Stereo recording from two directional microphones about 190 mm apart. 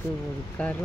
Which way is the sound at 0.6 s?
5° left (ahead or behind).